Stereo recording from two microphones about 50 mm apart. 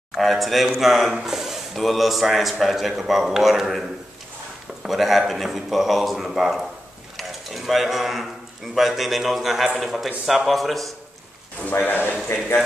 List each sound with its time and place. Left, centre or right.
0.2 s speech: centre
4.8 s speech: centre
7.2 s dishes: centre
8.7 s speech: centre
11.8 s speech: left